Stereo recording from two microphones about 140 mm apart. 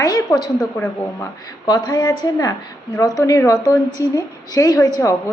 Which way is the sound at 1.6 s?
30° left (ahead or behind).